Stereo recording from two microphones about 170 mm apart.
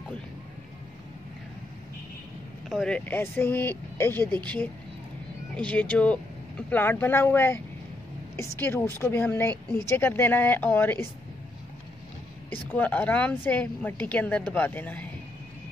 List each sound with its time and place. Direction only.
2.7 s speech: 5° left (ahead or behind)
12.4 s speech: 10° left (ahead or behind)